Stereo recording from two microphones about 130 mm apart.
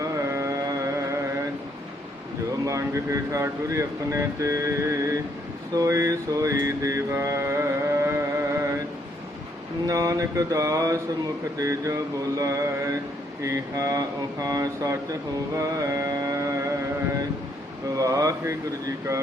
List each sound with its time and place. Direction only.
0.0 s carnatic music: 25° right (ahead or behind)
2.6 s speech: 25° right (ahead or behind)
5.7 s mantra: 25° right (ahead or behind)
9.8 s speech: 25° right (ahead or behind)
15.5 s music: 25° right (ahead or behind)
17.9 s speech: 25° right (ahead or behind)